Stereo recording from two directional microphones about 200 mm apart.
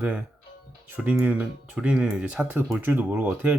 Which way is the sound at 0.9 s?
10° right (ahead or behind).